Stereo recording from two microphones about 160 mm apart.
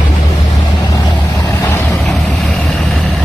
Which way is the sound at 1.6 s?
10° left (ahead or behind).